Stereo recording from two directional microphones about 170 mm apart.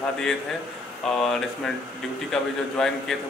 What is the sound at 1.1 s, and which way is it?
A man's voice, centre (ahead or behind).